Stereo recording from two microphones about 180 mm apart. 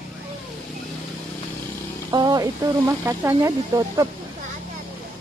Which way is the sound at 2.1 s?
20° right (ahead or behind).